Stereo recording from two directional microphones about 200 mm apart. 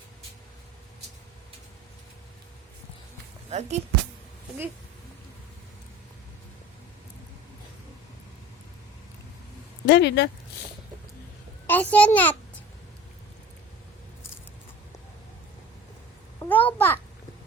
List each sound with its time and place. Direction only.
3.5 s speech: 35° right (ahead or behind)
9.8 s speech: 60° left (ahead or behind)
11.6 s a child's voice: 10° left (ahead or behind)
16.5 s a sound: 10° left (ahead or behind)